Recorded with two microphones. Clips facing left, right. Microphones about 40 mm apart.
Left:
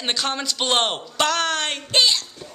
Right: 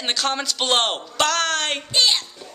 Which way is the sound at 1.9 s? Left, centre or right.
Left.